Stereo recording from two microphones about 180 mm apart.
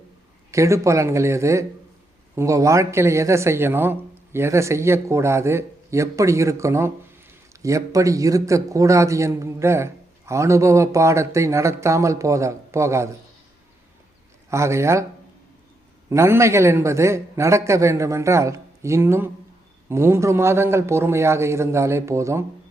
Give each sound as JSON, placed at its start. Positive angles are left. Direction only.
{"t": 0.5, "sound": "a man's voice", "side_deg": -15}
{"t": 14.5, "sound": "a man's voice", "side_deg": -15}
{"t": 16.0, "sound": "a man's voice", "side_deg": -15}